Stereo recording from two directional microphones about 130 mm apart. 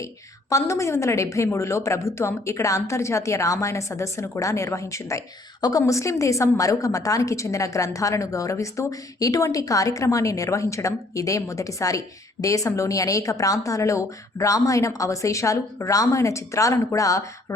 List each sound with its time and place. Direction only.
0.5 s a woman's voice: 25° left (ahead or behind)